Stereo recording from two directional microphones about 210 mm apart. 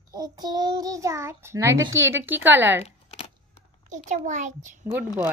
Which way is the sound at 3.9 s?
35° right (ahead or behind).